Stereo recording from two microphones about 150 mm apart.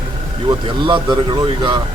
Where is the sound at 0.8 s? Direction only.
35° right (ahead or behind).